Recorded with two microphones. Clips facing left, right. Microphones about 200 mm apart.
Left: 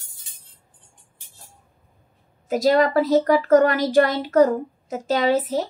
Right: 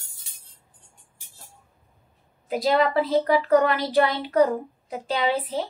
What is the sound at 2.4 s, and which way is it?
A woman's voice, 45° left (ahead or behind).